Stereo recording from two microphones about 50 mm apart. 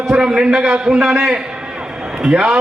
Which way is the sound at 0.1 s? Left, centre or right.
Centre.